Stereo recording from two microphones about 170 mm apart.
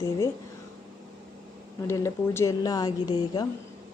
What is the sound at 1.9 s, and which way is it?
Speech, 15° left (ahead or behind).